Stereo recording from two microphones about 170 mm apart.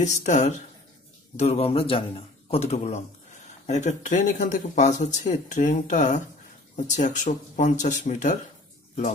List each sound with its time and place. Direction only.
0.0 s speech: 45° left (ahead or behind)